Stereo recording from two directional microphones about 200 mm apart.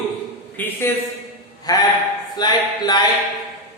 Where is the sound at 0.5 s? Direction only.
10° left (ahead or behind).